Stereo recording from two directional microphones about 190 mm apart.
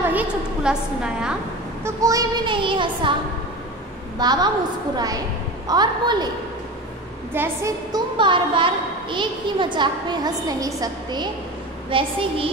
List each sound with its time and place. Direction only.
0.0 s a sound: 10° right (ahead or behind)
1.9 s a woman's voice: 15° right (ahead or behind)
4.2 s a woman's voice: 20° right (ahead or behind)
7.3 s a woman's voice: 15° right (ahead or behind)